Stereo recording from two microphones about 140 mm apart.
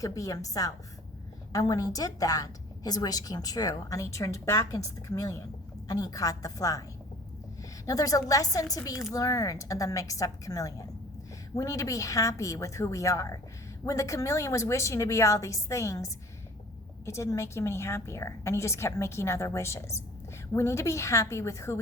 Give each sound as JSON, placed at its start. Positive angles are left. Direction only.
{"t": 0.0, "sound": "a woman's voice", "side_deg": 25}
{"t": 7.9, "sound": "a woman's voice", "side_deg": 25}